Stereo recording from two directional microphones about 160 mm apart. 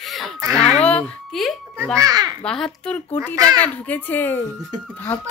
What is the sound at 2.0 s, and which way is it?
Speech, 25° right (ahead or behind).